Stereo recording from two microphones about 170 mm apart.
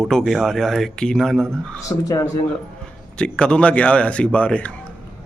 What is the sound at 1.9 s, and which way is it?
Speech, 15° left (ahead or behind).